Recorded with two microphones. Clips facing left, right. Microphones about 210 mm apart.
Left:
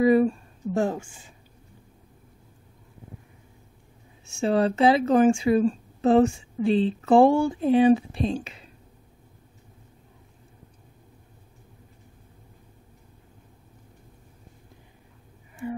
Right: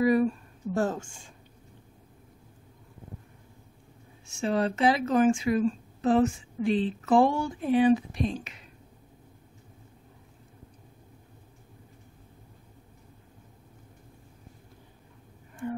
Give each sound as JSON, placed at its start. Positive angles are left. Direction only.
{"t": 0.0, "sound": "speech", "side_deg": 25}
{"t": 0.7, "sound": "speech", "side_deg": 10}
{"t": 4.3, "sound": "speech", "side_deg": 30}
{"t": 15.6, "sound": "speech", "side_deg": 10}